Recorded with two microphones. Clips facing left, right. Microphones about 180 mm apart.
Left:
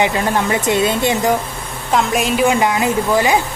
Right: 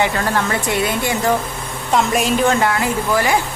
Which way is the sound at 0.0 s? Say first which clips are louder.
Left 2 dB; 15° left (ahead or behind).